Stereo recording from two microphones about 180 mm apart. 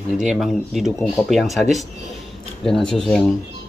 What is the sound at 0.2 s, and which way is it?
Speech, centre (ahead or behind).